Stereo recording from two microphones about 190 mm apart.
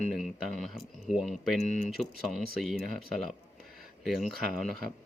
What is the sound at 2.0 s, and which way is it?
Speech, centre (ahead or behind).